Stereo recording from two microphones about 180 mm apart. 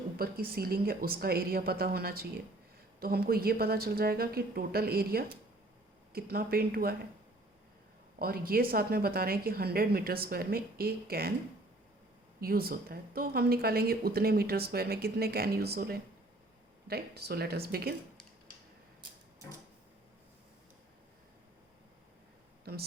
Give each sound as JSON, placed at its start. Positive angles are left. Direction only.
{"t": 0.2, "sound": "a woman's voice", "side_deg": -55}
{"t": 8.2, "sound": "a woman's voice", "side_deg": -55}
{"t": 12.4, "sound": "a woman's voice", "side_deg": -55}